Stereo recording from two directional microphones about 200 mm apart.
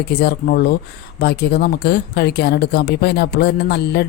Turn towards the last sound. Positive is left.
turn(degrees=55)  # may be behind; listen again after turning